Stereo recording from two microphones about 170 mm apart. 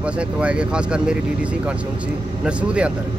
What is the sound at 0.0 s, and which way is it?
Speech, 5° right (ahead or behind).